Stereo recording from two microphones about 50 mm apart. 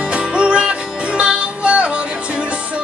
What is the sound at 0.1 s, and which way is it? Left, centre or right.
Music, right.